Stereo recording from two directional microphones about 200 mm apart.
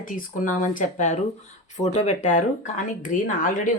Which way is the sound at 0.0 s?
45° left (ahead or behind).